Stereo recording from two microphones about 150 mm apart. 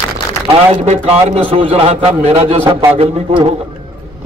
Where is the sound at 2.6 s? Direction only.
15° right (ahead or behind).